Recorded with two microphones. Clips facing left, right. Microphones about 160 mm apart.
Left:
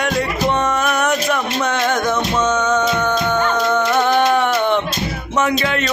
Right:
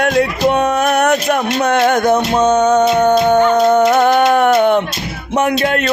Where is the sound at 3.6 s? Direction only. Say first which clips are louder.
Right 7 dB; 35° right (ahead or behind).